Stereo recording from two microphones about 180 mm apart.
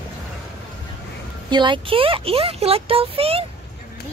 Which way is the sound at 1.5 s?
25° right (ahead or behind).